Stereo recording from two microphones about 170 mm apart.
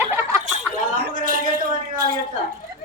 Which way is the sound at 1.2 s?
55° right (ahead or behind).